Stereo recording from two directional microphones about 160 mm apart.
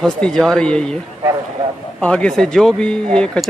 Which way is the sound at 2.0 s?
5° left (ahead or behind).